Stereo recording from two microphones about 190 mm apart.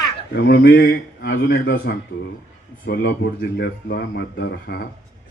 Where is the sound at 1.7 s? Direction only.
50° left (ahead or behind).